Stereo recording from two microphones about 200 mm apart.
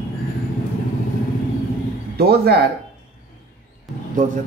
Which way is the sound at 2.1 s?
50° right (ahead or behind).